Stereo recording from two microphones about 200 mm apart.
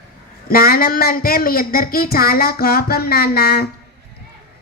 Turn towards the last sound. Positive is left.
turn(degrees=50)  # may be behind; listen again after turning